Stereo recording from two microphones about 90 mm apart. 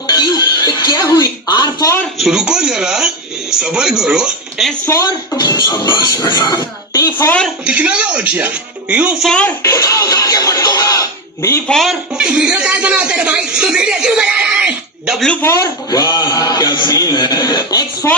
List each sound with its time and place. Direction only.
0.1 s a sound: 50° left (ahead or behind)
2.1 s speech: 5° right (ahead or behind)
5.4 s a man's voice: 50° left (ahead or behind)
7.4 s speech: 15° right (ahead or behind)
9.6 s speech: 40° left (ahead or behind)
11.7 s a man's voice: centre (ahead or behind)
12.1 s speech: 10° right (ahead or behind)
15.4 s speech: 30° left (ahead or behind)
15.6 s a man's voice: 45° left (ahead or behind)
18.0 s speech: 30° left (ahead or behind)